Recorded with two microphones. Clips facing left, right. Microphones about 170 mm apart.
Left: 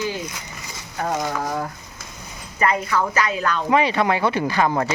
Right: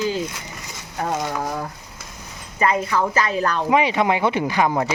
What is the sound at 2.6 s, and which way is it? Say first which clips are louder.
Speech: right 1 dB; 20° right (ahead or behind).